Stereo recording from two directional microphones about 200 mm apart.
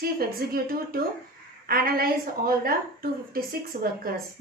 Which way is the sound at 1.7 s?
45° right (ahead or behind).